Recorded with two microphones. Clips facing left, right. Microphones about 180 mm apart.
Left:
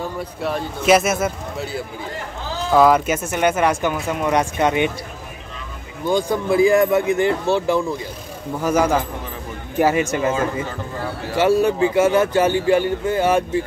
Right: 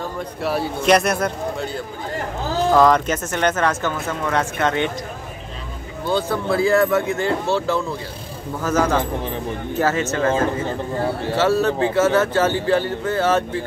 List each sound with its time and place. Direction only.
0.4 s speech: 5° right (ahead or behind); by 4.9 s 15° left (ahead or behind)
6.0 s speech: 15° left (ahead or behind)
11.3 s speech: 15° left (ahead or behind)